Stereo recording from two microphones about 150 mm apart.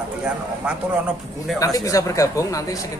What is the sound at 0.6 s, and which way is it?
Speech, 5° right (ahead or behind).